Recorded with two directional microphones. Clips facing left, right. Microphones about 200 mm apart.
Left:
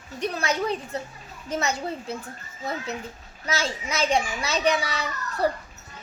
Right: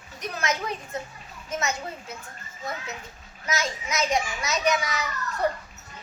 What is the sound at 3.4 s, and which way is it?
A child's voice, 30° left (ahead or behind).